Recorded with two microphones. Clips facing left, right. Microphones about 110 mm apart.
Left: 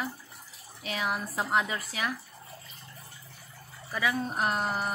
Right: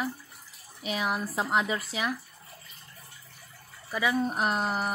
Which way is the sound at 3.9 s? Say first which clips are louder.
Right 3 dB; 10° right (ahead or behind).